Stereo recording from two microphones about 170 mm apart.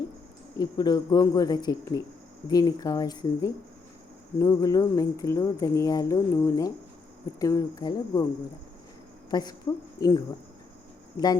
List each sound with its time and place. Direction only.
0.6 s speech: 25° left (ahead or behind)
9.3 s speech: 25° left (ahead or behind)